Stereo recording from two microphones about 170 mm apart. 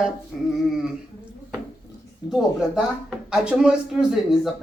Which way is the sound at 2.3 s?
Centre (ahead or behind).